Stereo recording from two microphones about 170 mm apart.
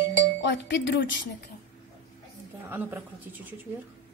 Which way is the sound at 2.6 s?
10° right (ahead or behind).